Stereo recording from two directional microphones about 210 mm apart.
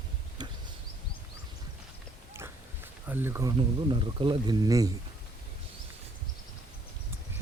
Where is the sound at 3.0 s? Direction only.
10° right (ahead or behind).